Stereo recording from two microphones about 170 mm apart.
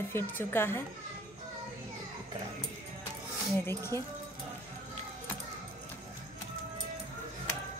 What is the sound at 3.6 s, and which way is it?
Speech, 15° left (ahead or behind).